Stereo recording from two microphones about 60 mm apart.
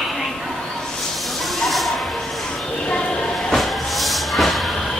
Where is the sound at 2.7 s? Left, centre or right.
Centre.